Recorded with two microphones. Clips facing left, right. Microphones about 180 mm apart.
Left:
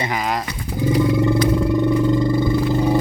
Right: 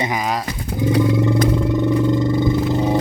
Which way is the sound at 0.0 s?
15° right (ahead or behind).